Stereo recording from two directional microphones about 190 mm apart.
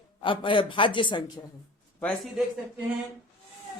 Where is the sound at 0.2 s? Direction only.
25° left (ahead or behind).